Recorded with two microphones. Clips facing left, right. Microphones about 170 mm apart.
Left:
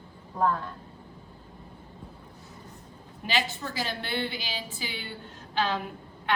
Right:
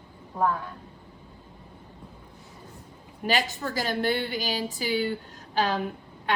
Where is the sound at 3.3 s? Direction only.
40° right (ahead or behind).